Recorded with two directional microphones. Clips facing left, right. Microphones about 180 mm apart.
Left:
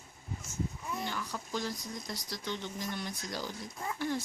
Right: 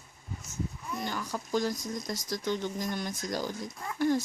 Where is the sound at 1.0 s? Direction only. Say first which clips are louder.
Right 3 dB; 45° right (ahead or behind).